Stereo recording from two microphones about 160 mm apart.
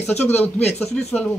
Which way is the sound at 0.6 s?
10° left (ahead or behind).